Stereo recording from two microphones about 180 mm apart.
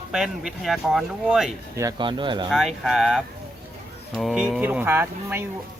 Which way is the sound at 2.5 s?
Centre (ahead or behind).